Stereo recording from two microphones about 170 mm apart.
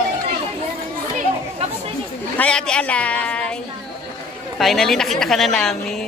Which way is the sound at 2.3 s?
5° left (ahead or behind).